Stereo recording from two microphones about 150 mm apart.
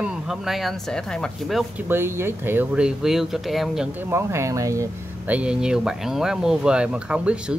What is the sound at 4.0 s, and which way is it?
Speech, 15° right (ahead or behind).